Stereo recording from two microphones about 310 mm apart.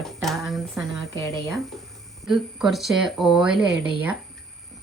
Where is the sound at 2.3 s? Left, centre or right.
Centre.